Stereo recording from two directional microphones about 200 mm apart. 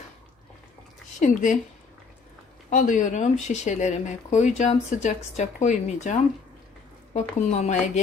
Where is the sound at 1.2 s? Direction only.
40° left (ahead or behind).